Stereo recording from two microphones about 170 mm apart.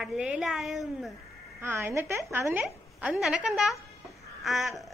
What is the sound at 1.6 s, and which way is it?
A woman's voice, 15° right (ahead or behind).